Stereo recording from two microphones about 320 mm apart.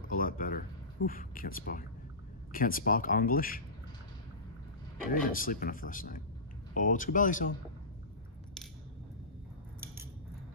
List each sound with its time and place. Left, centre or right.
0.1 s a sound: left
0.9 s speech: left
5.1 s speech: left